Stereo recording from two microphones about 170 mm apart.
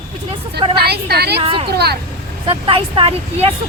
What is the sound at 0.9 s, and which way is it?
Speech, 70° right (ahead or behind).